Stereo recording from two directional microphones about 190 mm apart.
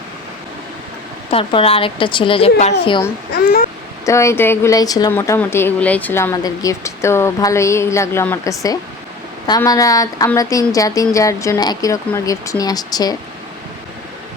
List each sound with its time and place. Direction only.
1.3 s a woman's voice: 30° left (ahead or behind)
4.0 s a woman's voice: 15° left (ahead or behind)